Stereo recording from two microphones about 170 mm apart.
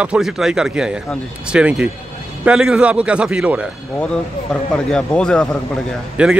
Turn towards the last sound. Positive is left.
turn(degrees=-5)  # may be behind; listen again after turning